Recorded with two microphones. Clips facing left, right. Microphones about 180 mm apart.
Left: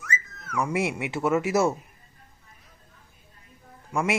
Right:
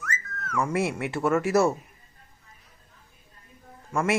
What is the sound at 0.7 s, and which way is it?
Speech, 15° left (ahead or behind).